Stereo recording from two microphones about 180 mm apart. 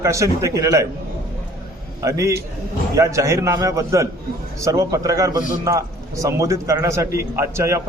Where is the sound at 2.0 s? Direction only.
15° right (ahead or behind).